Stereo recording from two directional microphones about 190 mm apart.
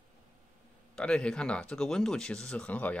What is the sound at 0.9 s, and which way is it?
Speech, 5° left (ahead or behind).